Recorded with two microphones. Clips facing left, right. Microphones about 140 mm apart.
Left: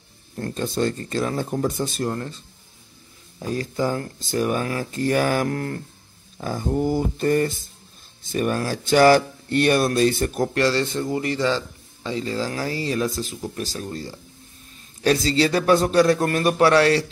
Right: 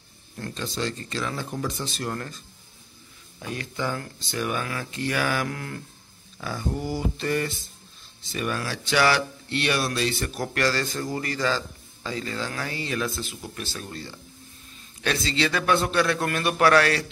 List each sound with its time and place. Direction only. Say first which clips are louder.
0.4 s speech: left 7 dB; 45° left (ahead or behind)
2.0 s speech: left 5 dB; 25° left (ahead or behind)
3.3 s speech: left 7 dB; 40° left (ahead or behind)
10.5 s a man's voice: left 5 dB; 25° left (ahead or behind)